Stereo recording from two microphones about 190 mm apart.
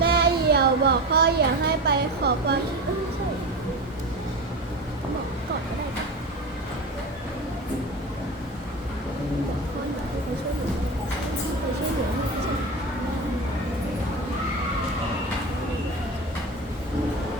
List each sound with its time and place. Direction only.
0.0 s speech: 55° right (ahead or behind)